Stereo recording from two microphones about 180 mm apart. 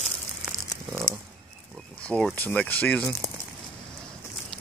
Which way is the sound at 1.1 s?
45° left (ahead or behind).